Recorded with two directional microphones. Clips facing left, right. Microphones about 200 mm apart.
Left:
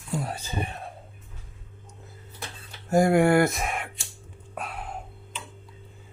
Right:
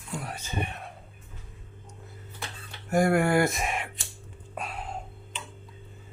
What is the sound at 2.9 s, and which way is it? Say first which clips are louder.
Speech: left 4 dB; 25° left (ahead or behind).